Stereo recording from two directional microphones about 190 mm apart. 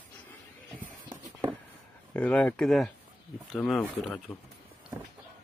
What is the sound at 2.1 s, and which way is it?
Speech, 5° left (ahead or behind).